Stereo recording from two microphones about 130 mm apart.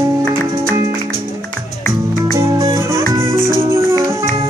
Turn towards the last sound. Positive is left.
turn(degrees=-20)  # may be behind; listen again after turning